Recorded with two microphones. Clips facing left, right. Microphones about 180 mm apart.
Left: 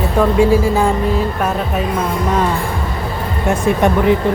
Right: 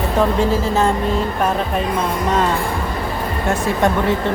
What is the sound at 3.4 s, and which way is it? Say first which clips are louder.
Speech: left 4 dB; 20° left (ahead or behind).